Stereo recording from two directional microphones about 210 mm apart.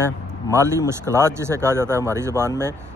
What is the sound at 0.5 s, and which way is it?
Speech, 15° right (ahead or behind).